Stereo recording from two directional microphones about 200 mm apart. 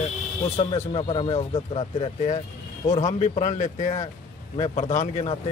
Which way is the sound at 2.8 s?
35° left (ahead or behind).